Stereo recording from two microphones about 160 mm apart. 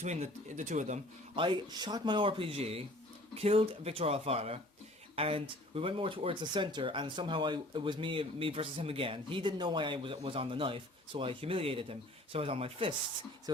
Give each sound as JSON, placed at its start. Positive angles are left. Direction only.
{"t": 0.0, "sound": "speech", "side_deg": -45}
{"t": 1.4, "sound": "speech", "side_deg": -30}